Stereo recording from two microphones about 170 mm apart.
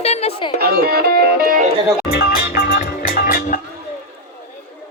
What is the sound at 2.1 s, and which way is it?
Music, 65° left (ahead or behind).